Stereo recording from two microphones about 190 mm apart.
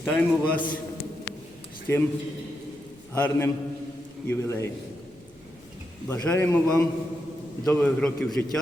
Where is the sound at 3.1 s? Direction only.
10° left (ahead or behind).